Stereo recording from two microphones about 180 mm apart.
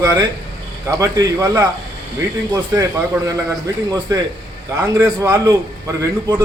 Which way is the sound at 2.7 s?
20° right (ahead or behind).